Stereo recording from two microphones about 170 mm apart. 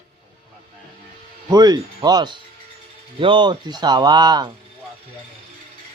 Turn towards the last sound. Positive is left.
turn(degrees=-25)  # may be behind; listen again after turning